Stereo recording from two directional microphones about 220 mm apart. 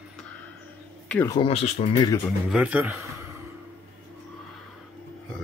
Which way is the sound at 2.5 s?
5° right (ahead or behind).